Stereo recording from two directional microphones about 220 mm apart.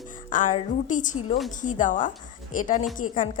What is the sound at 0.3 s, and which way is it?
A woman's voice, 35° left (ahead or behind).